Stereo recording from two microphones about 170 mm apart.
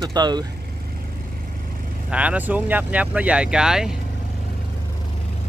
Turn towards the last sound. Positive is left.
turn(degrees=-5)  # may be behind; listen again after turning